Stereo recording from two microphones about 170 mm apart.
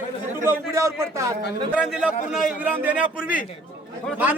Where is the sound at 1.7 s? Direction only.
5° right (ahead or behind).